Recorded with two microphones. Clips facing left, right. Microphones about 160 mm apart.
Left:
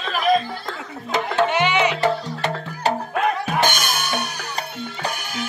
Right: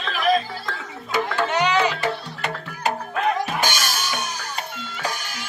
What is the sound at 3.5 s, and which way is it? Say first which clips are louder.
Music: left 3 dB; 55° left (ahead or behind).